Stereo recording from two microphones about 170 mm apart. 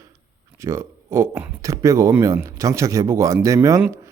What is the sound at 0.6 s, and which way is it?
Speech, 15° right (ahead or behind).